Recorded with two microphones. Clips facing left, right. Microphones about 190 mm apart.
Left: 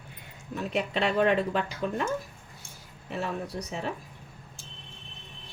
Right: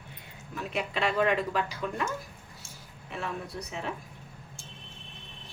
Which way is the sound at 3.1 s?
35° left (ahead or behind).